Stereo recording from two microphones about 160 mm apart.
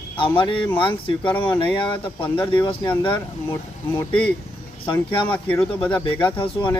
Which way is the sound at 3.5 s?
10° left (ahead or behind).